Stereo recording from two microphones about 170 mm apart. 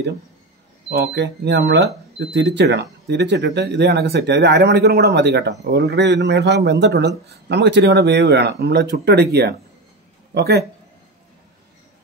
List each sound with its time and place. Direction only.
0.8 s speech: 80° right